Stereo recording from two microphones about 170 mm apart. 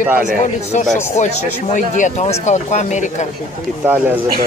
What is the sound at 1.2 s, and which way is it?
Speech, 45° left (ahead or behind).